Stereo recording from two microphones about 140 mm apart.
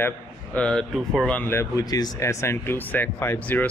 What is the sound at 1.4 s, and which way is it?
Speech, 20° left (ahead or behind).